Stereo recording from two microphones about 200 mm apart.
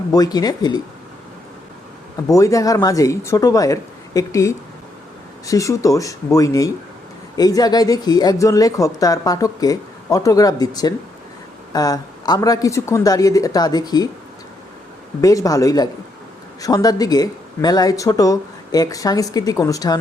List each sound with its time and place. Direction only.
0.1 s speech: 20° left (ahead or behind)
2.3 s speech: 15° left (ahead or behind)
11.7 s speech: 20° left (ahead or behind)
15.2 s speech: 15° left (ahead or behind)